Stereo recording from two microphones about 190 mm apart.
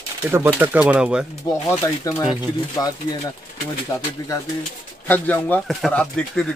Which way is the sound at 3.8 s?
15° left (ahead or behind).